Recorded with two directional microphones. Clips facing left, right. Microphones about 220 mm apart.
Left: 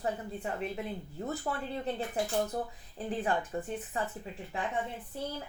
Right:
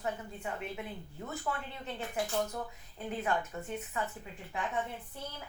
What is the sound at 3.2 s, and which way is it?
Speech, 35° left (ahead or behind).